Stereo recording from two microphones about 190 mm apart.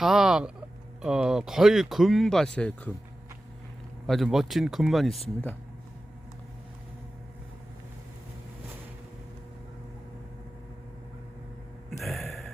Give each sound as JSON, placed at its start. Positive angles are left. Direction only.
{"t": 0.0, "sound": "speech", "side_deg": 0}
{"t": 4.0, "sound": "speech", "side_deg": 0}
{"t": 11.9, "sound": "a sound", "side_deg": 0}